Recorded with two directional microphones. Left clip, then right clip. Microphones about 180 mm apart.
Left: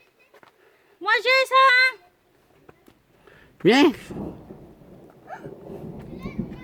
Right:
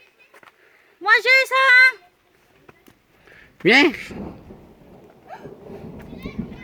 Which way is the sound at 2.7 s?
50° right (ahead or behind).